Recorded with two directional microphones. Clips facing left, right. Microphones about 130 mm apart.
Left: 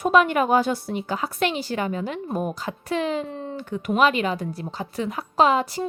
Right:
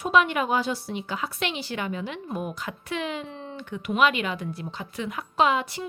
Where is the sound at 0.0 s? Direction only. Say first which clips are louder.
Left 4 dB; 45° left (ahead or behind).